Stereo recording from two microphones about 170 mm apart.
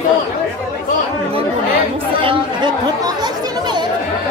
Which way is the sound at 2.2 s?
30° right (ahead or behind).